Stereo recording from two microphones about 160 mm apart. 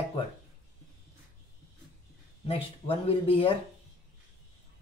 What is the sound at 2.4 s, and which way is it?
A woman's voice, 35° left (ahead or behind).